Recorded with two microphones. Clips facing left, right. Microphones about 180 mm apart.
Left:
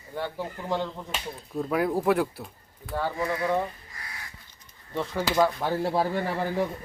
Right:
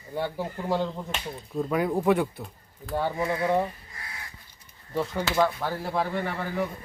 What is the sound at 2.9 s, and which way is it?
Speech, 20° right (ahead or behind).